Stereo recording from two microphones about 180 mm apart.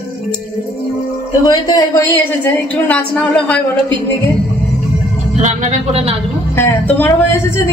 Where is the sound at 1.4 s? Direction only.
20° left (ahead or behind).